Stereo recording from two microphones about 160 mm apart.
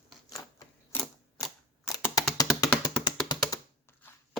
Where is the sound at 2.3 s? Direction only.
25° left (ahead or behind).